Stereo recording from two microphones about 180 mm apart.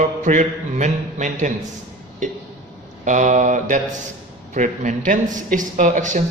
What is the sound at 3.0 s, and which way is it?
A man's voice, 45° right (ahead or behind).